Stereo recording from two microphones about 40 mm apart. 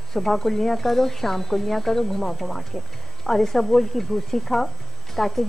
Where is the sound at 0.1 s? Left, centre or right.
Centre.